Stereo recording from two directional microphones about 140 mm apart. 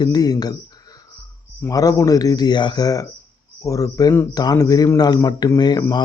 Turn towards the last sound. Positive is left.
turn(degrees=30)  # may be behind; listen again after turning